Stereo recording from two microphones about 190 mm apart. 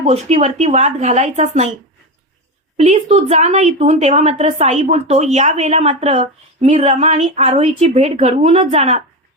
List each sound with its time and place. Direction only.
0.0 s a woman's voice: 35° right (ahead or behind)
2.7 s a woman's voice: 35° right (ahead or behind)